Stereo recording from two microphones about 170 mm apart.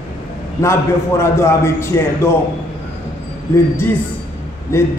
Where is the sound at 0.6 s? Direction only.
15° left (ahead or behind).